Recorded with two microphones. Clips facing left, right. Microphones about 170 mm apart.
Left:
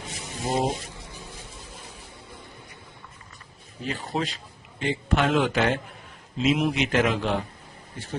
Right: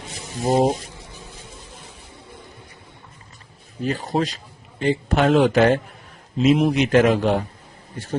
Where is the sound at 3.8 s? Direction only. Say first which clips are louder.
Right 7 dB; 40° right (ahead or behind).